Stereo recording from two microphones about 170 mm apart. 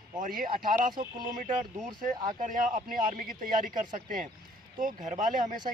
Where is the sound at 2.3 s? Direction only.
50° right (ahead or behind).